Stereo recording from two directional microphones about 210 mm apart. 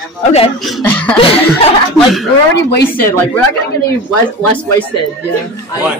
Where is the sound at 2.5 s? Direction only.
55° left (ahead or behind).